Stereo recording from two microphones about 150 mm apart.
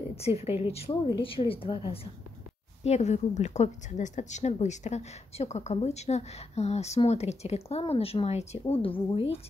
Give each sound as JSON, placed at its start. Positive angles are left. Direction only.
{"t": 0.1, "sound": "a woman's voice", "side_deg": 40}
{"t": 2.8, "sound": "a woman's voice", "side_deg": 50}